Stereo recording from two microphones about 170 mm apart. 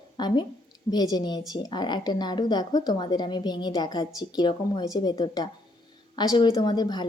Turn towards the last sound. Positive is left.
turn(degrees=25)  # may be behind; listen again after turning